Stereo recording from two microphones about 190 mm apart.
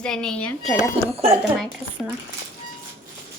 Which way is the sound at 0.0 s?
5° left (ahead or behind).